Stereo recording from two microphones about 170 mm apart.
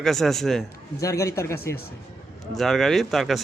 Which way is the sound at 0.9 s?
20° left (ahead or behind).